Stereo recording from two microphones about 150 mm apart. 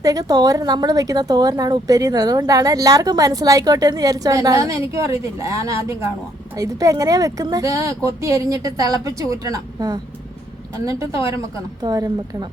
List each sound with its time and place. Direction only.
0.0 s speech: 25° right (ahead or behind)